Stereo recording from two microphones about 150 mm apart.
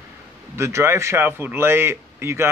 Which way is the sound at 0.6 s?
20° right (ahead or behind).